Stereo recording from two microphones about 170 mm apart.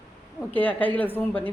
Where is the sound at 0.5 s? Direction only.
10° left (ahead or behind).